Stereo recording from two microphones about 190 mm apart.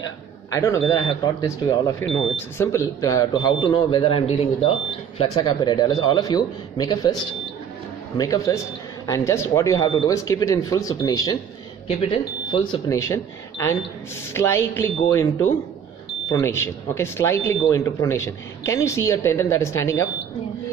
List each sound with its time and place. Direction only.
0.5 s a man's voice: 15° left (ahead or behind)
8.2 s a man's voice: 20° left (ahead or behind)
13.0 s speech: 15° left (ahead or behind)